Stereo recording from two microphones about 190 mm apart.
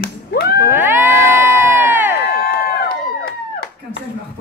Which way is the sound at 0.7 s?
10° right (ahead or behind).